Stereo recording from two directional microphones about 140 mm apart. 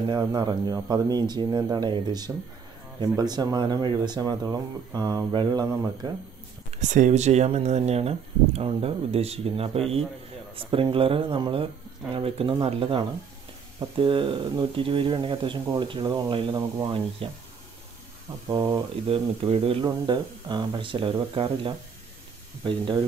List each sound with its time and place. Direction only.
0.1 s speech: 30° right (ahead or behind)
6.7 s speech: 60° right (ahead or behind); by 16.5 s 40° right (ahead or behind)
16.5 s speech: 25° right (ahead or behind)
17.2 s speech: 40° right (ahead or behind)
18.5 s speech: 25° right (ahead or behind)
19.0 s speech: 40° right (ahead or behind)
19.8 s speech: 30° right (ahead or behind)